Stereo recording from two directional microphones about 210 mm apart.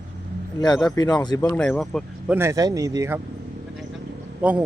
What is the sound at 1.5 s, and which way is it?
Speech, centre (ahead or behind).